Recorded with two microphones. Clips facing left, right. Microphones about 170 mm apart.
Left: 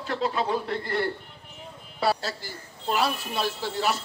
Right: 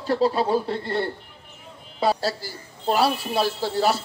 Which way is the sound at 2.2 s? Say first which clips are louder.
Right 7 dB; 35° right (ahead or behind).